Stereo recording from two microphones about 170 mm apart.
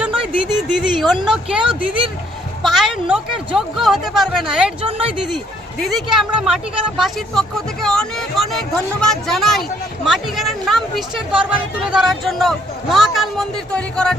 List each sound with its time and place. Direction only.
0.4 s speech: 5° right (ahead or behind)
4.9 s speech: 35° right (ahead or behind)
5.9 s speech: centre (ahead or behind)